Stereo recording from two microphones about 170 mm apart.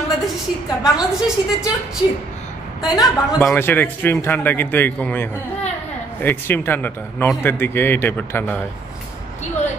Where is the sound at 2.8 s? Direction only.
20° left (ahead or behind).